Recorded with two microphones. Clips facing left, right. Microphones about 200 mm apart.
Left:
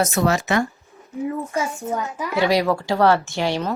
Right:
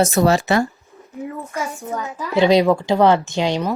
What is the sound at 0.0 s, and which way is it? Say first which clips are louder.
Speech: right 4 dB; 30° right (ahead or behind).